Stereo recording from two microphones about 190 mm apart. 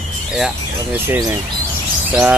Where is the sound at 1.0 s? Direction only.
20° right (ahead or behind).